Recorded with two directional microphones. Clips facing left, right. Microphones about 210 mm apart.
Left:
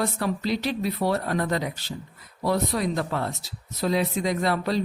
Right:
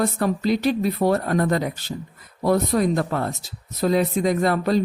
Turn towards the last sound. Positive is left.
turn(degrees=-50)  # may be behind; listen again after turning